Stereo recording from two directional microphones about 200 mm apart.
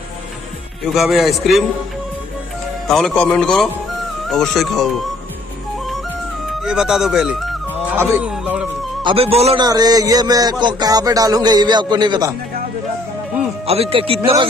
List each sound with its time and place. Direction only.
0.9 s speech: centre (ahead or behind)
2.9 s speech: 5° left (ahead or behind)
6.6 s music: 5° right (ahead or behind)
8.0 s speech: 10° right (ahead or behind)
9.0 s speech: 30° right (ahead or behind)
9.7 s speech: 20° right (ahead or behind)
13.7 s speech: 30° right (ahead or behind)